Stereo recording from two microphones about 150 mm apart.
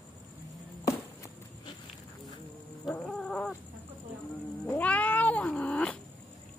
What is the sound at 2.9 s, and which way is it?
Dog, 5° left (ahead or behind).